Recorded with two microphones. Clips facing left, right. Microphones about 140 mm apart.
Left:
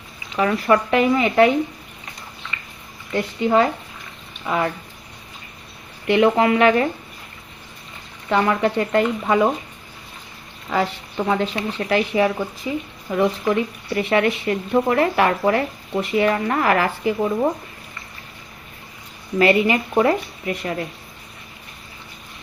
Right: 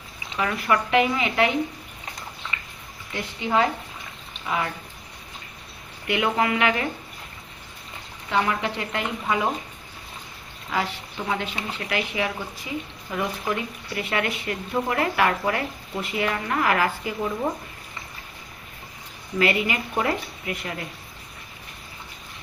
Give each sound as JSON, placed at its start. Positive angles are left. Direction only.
{"t": 0.3, "sound": "speech", "side_deg": 35}
{"t": 3.1, "sound": "speech", "side_deg": 45}
{"t": 6.1, "sound": "speech", "side_deg": 35}
{"t": 8.3, "sound": "speech", "side_deg": 45}
{"t": 11.3, "sound": "speech", "side_deg": 35}
{"t": 19.4, "sound": "speech", "side_deg": 30}